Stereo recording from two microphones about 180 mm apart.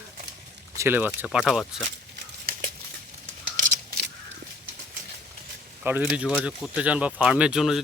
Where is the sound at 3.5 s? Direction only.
45° right (ahead or behind).